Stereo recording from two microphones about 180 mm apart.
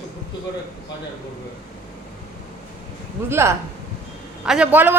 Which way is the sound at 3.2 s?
15° right (ahead or behind).